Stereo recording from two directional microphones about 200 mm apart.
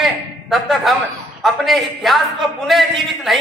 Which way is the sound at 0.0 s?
Centre (ahead or behind).